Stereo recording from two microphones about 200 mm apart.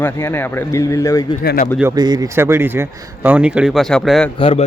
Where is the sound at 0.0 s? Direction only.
10° left (ahead or behind).